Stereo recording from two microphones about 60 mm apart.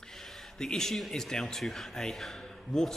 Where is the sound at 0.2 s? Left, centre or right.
Centre.